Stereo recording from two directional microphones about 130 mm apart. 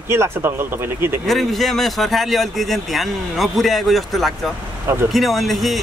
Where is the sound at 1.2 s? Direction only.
Centre (ahead or behind).